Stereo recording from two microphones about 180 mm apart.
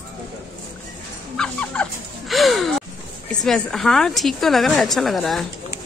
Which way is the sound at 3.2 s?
Centre (ahead or behind).